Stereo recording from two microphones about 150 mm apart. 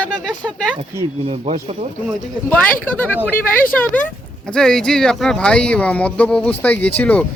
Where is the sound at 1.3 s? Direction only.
45° right (ahead or behind).